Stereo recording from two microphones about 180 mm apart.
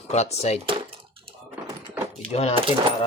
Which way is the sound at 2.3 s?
35° left (ahead or behind).